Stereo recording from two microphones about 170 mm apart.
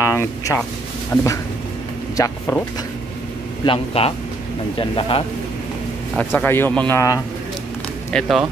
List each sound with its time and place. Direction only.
0.1 s speech: 15° left (ahead or behind)
1.1 s a sound: 20° left (ahead or behind)
2.1 s speech: 15° left (ahead or behind)
3.6 s speech: 35° left (ahead or behind)
6.1 s speech: 10° left (ahead or behind)
8.1 s speech: centre (ahead or behind)